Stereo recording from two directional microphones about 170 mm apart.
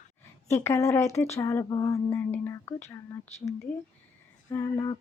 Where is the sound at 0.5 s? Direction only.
15° left (ahead or behind).